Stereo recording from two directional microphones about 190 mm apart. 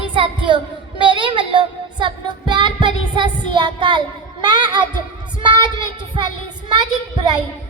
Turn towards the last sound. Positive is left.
turn(degrees=-25)  # may be behind; listen again after turning